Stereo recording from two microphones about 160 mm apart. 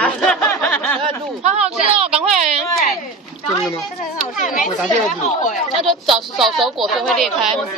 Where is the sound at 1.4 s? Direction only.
40° right (ahead or behind).